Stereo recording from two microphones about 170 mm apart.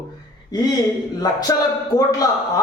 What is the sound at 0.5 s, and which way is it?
A man's voice, 25° left (ahead or behind).